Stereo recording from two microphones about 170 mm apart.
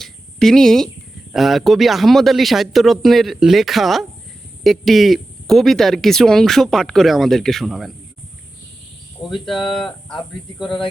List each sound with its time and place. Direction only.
0.0 s a sound: 5° left (ahead or behind)
1.3 s speech: centre (ahead or behind)
9.2 s speech: centre (ahead or behind)
10.1 s speech: 30° left (ahead or behind)